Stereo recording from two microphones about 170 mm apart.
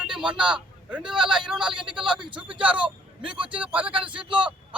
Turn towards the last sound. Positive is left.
turn(degrees=-30)  # may be behind; listen again after turning